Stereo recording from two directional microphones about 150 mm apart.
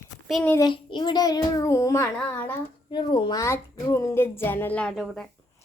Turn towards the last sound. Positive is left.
turn(degrees=5)  # may be behind; listen again after turning